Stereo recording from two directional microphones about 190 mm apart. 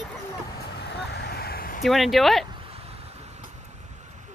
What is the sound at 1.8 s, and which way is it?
Speech, centre (ahead or behind).